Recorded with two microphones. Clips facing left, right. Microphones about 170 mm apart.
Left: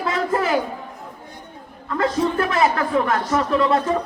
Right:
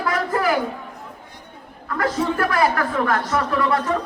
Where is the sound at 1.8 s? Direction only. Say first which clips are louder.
Left 2 dB; 25° left (ahead or behind).